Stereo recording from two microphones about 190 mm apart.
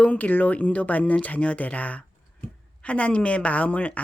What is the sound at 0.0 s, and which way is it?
Speech, 10° left (ahead or behind).